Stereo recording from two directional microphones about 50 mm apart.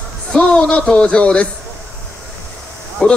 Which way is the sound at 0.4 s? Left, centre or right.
Left.